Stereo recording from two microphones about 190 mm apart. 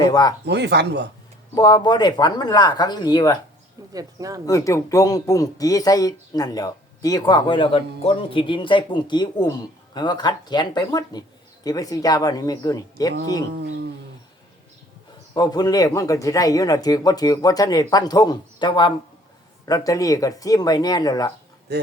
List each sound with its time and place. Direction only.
0.0 s speech: 20° left (ahead or behind)
0.4 s speech: 65° right (ahead or behind)
1.5 s speech: 20° left (ahead or behind)
3.9 s speech: 20° right (ahead or behind)
4.4 s speech: 15° left (ahead or behind)
13.5 s speech: 60° right (ahead or behind)
15.4 s speech: 20° left (ahead or behind)
21.7 s speech: 60° right (ahead or behind)